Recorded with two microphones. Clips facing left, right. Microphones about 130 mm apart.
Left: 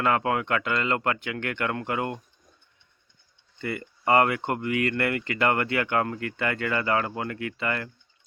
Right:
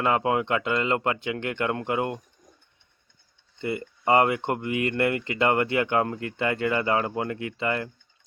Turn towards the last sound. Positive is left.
turn(degrees=-20)  # may be behind; listen again after turning